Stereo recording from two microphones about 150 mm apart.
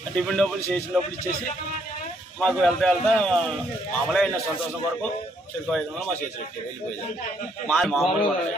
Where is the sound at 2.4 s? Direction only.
5° left (ahead or behind).